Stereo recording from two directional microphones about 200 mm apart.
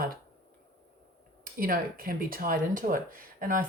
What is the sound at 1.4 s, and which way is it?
Speech, 45° right (ahead or behind).